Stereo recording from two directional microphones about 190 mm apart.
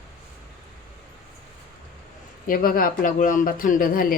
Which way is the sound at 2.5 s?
50° left (ahead or behind).